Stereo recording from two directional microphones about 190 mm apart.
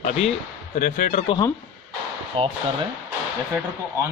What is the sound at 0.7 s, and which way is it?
Speech, 45° left (ahead or behind).